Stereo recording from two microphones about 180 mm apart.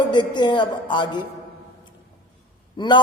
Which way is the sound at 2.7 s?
25° left (ahead or behind).